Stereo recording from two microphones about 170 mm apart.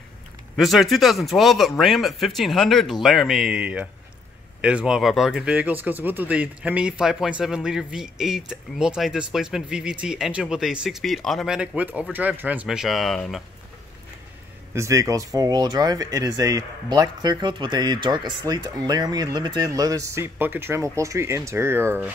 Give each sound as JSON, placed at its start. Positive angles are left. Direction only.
{"t": 0.6, "sound": "speech", "side_deg": 0}
{"t": 14.7, "sound": "speech", "side_deg": -15}